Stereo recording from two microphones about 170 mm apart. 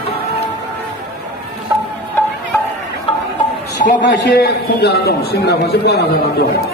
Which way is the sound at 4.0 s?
70° left (ahead or behind).